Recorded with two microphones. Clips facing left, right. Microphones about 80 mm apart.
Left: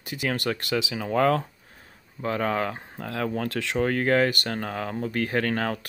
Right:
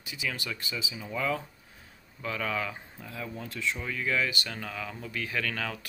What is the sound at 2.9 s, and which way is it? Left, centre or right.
Speech, left.